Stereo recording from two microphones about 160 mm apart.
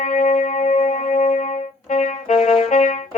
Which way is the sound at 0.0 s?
50° left (ahead or behind).